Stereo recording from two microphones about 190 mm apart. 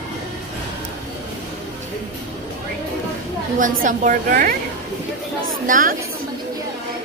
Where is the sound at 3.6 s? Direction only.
45° right (ahead or behind).